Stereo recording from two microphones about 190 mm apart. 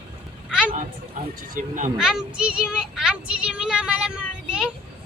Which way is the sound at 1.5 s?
40° right (ahead or behind).